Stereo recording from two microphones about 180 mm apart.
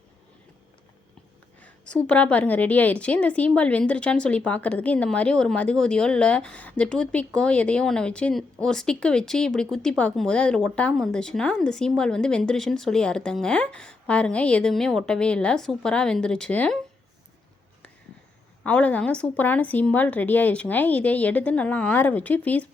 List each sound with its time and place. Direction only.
1.5 s a woman's voice: 5° left (ahead or behind)
18.6 s a woman's voice: 5° left (ahead or behind)